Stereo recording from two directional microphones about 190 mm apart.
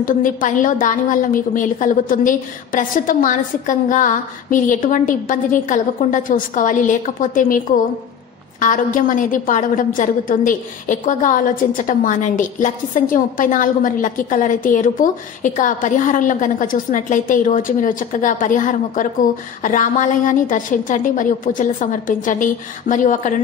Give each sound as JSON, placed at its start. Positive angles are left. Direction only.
{"t": 0.0, "sound": "a woman's voice", "side_deg": 45}